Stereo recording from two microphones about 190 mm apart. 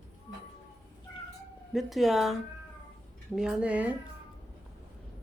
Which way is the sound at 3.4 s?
5° right (ahead or behind).